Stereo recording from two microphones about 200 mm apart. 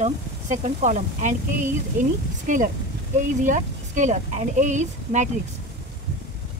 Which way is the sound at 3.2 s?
40° right (ahead or behind).